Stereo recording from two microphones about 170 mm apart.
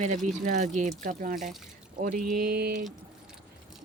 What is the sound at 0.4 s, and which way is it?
Speech, 45° right (ahead or behind).